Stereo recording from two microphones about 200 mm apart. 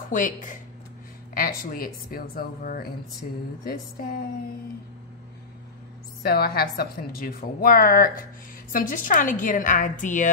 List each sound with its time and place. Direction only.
0.1 s a woman's voice: 40° left (ahead or behind)
6.2 s a woman's voice: 50° left (ahead or behind)